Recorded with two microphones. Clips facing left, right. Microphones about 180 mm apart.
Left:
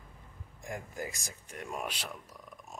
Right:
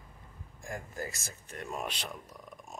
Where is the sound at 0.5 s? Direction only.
20° left (ahead or behind).